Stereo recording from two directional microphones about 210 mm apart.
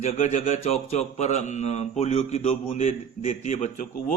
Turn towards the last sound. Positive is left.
turn(degrees=35)  # may be behind; listen again after turning